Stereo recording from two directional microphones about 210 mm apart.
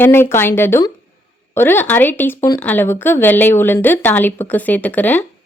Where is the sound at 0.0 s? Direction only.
10° left (ahead or behind).